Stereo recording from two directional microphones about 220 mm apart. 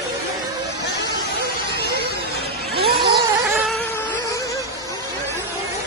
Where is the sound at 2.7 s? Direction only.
45° right (ahead or behind).